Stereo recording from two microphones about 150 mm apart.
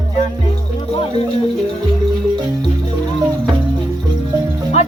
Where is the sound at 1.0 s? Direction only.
35° left (ahead or behind).